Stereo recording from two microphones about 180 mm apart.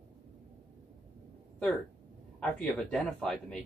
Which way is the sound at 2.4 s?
5° left (ahead or behind).